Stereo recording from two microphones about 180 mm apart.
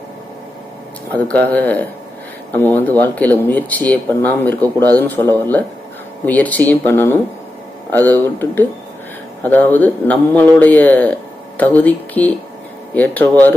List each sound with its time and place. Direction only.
1.1 s speech: 10° left (ahead or behind)